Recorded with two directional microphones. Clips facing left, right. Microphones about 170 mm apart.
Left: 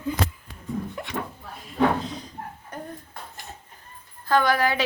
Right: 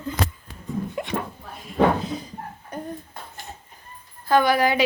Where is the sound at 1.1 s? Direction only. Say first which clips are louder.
Right 3 dB; 60° right (ahead or behind).